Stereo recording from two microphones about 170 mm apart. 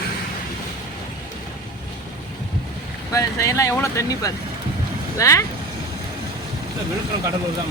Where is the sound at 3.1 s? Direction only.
20° left (ahead or behind).